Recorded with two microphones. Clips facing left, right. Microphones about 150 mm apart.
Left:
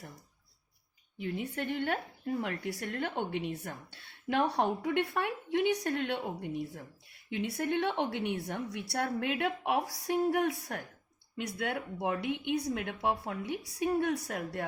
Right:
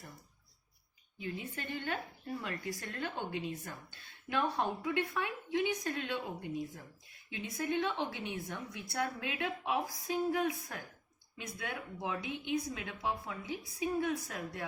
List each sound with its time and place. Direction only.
1.2 s a woman's voice: 70° left (ahead or behind)